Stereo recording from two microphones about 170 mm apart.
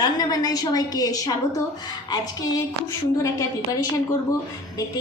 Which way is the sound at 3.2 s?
20° left (ahead or behind).